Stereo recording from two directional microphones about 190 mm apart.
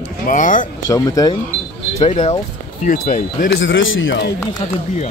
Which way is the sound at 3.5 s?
80° left.